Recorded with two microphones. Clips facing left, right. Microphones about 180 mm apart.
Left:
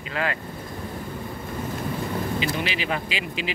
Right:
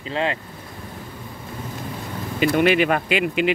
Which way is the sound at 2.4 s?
55° right (ahead or behind).